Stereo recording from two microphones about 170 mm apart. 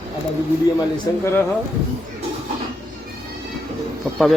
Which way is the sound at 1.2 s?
15° left (ahead or behind).